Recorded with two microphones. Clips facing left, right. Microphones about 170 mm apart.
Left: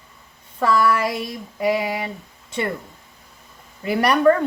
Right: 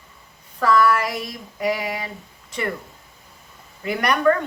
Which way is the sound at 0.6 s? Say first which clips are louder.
Even; 25° left (ahead or behind).